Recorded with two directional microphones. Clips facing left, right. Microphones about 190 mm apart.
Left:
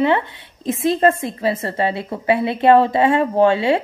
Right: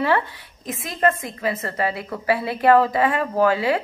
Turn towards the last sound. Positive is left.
turn(degrees=25)  # may be behind; listen again after turning